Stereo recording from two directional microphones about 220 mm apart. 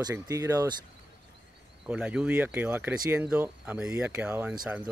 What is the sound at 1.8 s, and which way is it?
Speech, 5° right (ahead or behind).